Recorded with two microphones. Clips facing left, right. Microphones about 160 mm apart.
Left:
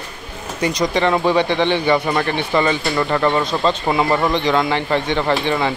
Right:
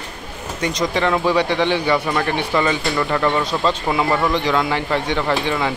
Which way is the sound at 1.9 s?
10° left (ahead or behind).